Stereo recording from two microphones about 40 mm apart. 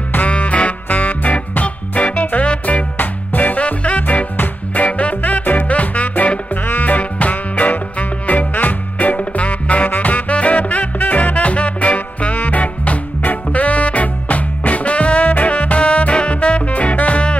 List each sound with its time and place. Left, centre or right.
0.2 s music: left